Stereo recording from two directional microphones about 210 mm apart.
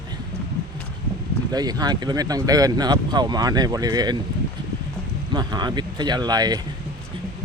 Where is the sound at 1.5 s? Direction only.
20° right (ahead or behind).